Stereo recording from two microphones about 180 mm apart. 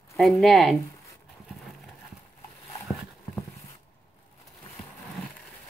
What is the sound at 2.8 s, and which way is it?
Horse, centre (ahead or behind).